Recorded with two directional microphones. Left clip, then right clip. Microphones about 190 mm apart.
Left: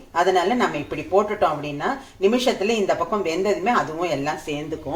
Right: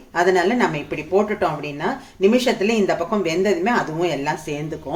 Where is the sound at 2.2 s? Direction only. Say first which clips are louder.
Right 3 dB; 35° right (ahead or behind).